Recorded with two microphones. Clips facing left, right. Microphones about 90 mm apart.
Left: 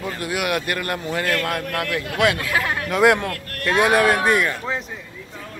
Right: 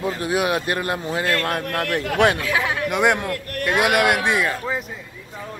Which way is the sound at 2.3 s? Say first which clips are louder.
Right 1 dB; 5° right (ahead or behind).